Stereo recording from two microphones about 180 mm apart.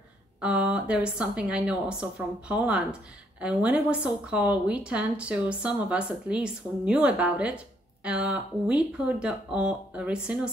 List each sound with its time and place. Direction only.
0.4 s a woman's voice: 5° right (ahead or behind)